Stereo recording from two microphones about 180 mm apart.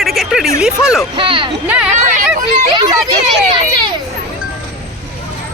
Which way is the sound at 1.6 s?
5° right (ahead or behind).